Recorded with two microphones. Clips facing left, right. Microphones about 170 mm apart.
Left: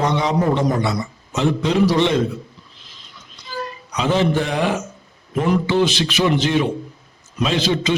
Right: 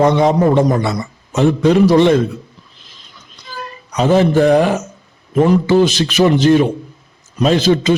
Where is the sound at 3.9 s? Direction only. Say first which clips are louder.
Right 6 dB; 45° right (ahead or behind).